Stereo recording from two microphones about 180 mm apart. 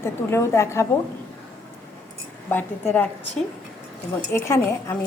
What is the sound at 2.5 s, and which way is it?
Speech, 10° left (ahead or behind).